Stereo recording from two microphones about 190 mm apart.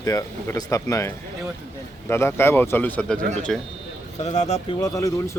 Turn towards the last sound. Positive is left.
turn(degrees=15)  # may be behind; listen again after turning